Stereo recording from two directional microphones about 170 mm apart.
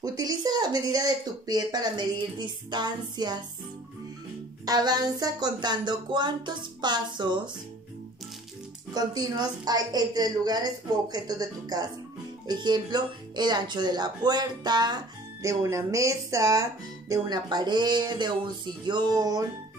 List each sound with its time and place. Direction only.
0.0 s speech: 20° right (ahead or behind)
4.6 s speech: 25° right (ahead or behind)
8.9 s speech: 25° right (ahead or behind)